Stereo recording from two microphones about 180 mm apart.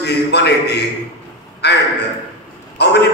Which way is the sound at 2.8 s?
70° left (ahead or behind).